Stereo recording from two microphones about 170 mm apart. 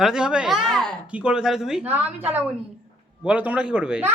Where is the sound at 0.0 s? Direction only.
5° right (ahead or behind).